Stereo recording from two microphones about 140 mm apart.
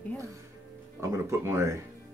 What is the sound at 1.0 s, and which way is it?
Speech, 20° right (ahead or behind).